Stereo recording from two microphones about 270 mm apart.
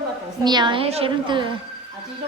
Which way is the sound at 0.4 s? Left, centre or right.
Centre.